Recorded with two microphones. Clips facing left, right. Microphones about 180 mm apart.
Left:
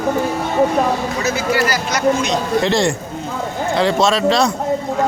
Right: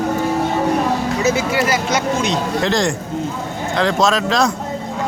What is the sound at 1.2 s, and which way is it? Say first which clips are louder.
Speech: right 1 dB; 25° right (ahead or behind).